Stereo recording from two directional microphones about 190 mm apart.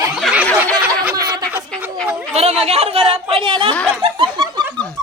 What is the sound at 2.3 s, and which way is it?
Speech, 30° right (ahead or behind).